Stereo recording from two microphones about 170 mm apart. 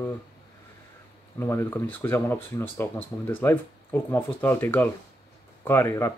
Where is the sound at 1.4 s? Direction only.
15° left (ahead or behind).